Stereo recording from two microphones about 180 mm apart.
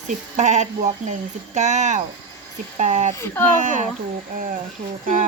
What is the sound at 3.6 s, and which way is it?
Speech, 45° right (ahead or behind).